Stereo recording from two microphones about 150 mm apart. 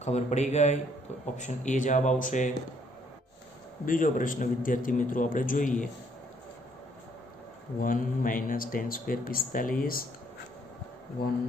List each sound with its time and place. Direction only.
0.0 s a man's voice: 50° left (ahead or behind)
3.8 s a man's voice: 65° left (ahead or behind)
7.8 s speech: 65° left (ahead or behind)
11.2 s speech: 90° left